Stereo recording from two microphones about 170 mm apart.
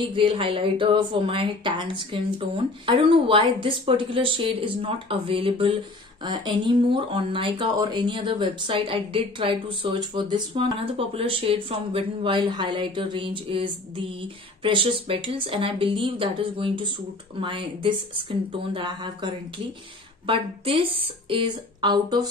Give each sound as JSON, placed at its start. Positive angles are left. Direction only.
{"t": 0.1, "sound": "speech", "side_deg": -30}